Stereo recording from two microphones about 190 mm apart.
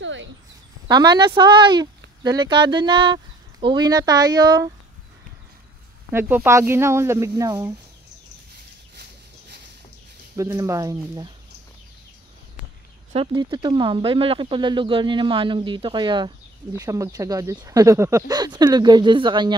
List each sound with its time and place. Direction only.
0.0 s a sound: 75° right (ahead or behind)
0.8 s speech: 20° right (ahead or behind)
6.1 s speech: 10° right (ahead or behind)
10.3 s speech: 15° right (ahead or behind)
13.1 s speech: 25° right (ahead or behind)